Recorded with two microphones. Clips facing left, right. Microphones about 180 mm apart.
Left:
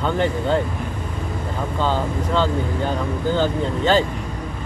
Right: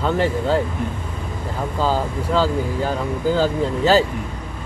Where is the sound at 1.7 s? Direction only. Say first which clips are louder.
Right 1 dB; 5° right (ahead or behind).